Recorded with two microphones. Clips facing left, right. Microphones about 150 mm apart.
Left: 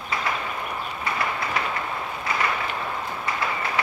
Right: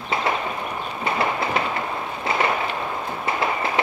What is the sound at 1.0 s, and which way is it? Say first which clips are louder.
Train: right 6 dB; 25° right (ahead or behind).